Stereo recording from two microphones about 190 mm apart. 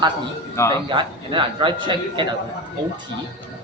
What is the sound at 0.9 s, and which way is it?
Speech, 25° right (ahead or behind).